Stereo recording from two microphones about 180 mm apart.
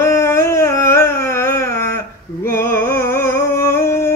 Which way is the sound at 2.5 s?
15° left (ahead or behind).